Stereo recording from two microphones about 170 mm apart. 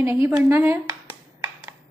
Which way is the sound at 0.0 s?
15° right (ahead or behind).